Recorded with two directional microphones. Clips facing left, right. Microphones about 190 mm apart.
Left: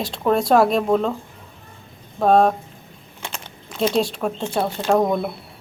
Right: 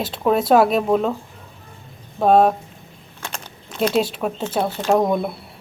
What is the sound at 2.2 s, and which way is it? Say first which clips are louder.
Speech: right 1 dB; 5° right (ahead or behind).